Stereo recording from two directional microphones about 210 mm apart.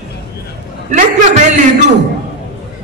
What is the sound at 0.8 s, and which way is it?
Speech, 35° right (ahead or behind).